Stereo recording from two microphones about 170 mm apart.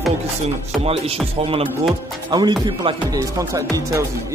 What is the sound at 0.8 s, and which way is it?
Music, 35° right (ahead or behind).